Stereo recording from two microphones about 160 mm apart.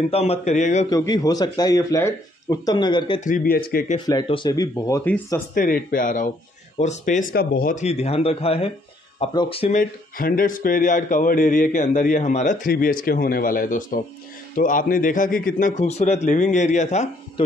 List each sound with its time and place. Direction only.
0.1 s a man's voice: 40° left (ahead or behind)
0.8 s speech: 25° left (ahead or behind)
3.2 s speech: 55° left (ahead or behind); by 3.8 s 70° left (ahead or behind)
4.0 s speech: 25° left (ahead or behind)
5.5 s a man's voice: 65° left (ahead or behind); by 7.2 s 50° left (ahead or behind)
7.3 s speech: 75° left (ahead or behind)
7.7 s speech: 40° left (ahead or behind)
9.8 s a man's voice: 65° left (ahead or behind)
12.7 s a man's voice: 65° left (ahead or behind); by 17.1 s 45° left (ahead or behind)